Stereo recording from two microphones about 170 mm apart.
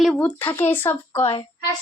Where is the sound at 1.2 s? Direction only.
35° left (ahead or behind).